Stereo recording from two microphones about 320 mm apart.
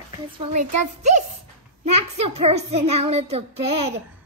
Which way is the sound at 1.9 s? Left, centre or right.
Centre.